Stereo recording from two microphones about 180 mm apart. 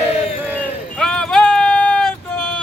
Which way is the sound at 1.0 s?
5° left (ahead or behind).